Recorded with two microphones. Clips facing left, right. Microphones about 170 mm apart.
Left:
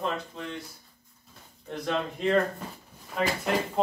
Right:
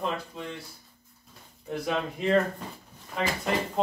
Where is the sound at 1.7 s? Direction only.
5° right (ahead or behind).